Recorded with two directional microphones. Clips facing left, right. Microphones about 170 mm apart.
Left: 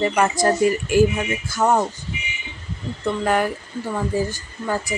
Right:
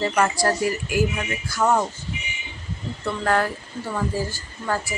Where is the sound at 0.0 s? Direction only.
20° left (ahead or behind).